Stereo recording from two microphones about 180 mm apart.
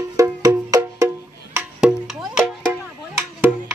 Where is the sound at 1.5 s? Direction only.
5° right (ahead or behind).